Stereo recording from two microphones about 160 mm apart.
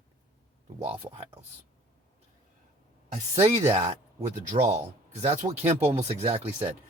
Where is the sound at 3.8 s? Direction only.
45° right (ahead or behind).